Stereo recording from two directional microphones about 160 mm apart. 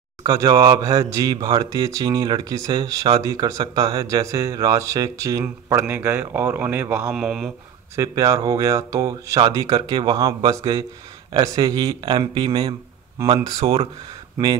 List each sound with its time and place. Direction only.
0.2 s speech: 25° right (ahead or behind); by 7.5 s 5° right (ahead or behind)
7.9 s speech: 20° right (ahead or behind); by 13.8 s 40° right (ahead or behind)